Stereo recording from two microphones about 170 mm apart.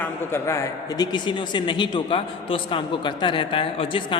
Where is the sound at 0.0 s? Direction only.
15° left (ahead or behind).